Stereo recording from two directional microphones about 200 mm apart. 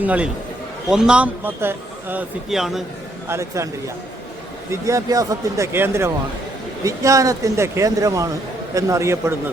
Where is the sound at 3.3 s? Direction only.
15° right (ahead or behind).